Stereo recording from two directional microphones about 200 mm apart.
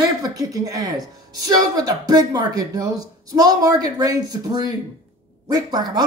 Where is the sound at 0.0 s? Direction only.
20° right (ahead or behind).